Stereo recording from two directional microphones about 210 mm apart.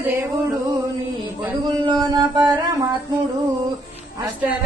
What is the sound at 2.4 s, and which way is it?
Chant, 15° right (ahead or behind).